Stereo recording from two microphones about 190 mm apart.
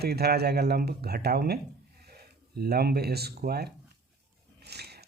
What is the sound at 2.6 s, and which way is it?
Speech, 55° right (ahead or behind).